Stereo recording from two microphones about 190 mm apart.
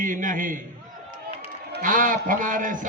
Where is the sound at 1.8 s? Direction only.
45° right (ahead or behind).